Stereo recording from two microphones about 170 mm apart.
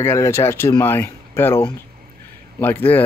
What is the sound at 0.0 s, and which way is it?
Speech, 15° left (ahead or behind).